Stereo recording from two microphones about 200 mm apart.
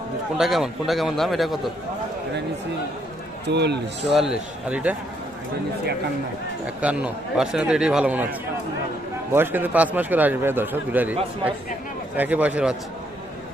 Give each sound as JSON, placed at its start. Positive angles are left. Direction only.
{"t": 0.3, "sound": "a man's voice", "side_deg": 0}
{"t": 3.4, "sound": "a man's voice", "side_deg": -55}
{"t": 4.1, "sound": "a man's voice", "side_deg": -5}
{"t": 6.8, "sound": "a man's voice", "side_deg": -5}